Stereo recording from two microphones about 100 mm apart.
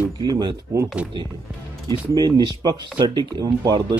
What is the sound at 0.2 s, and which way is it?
Speech, 50° right (ahead or behind).